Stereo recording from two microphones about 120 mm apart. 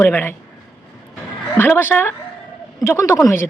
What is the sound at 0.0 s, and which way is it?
Speech, 15° left (ahead or behind).